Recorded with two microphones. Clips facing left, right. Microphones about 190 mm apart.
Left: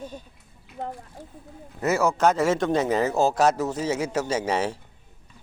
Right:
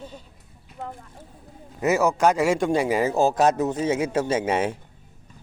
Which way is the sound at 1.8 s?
15° right (ahead or behind).